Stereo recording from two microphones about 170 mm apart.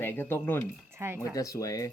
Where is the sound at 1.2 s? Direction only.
20° left (ahead or behind).